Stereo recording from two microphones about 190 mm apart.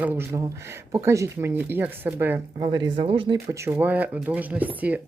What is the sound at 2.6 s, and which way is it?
Speech, 25° right (ahead or behind).